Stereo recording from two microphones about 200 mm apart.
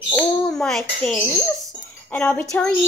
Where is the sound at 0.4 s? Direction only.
5° left (ahead or behind).